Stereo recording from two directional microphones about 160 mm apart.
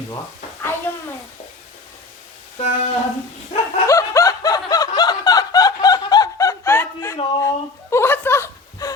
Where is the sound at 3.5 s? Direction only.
45° left (ahead or behind).